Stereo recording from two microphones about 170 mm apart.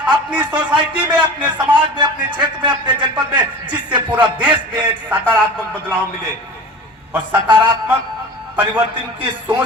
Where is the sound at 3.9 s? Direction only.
10° right (ahead or behind).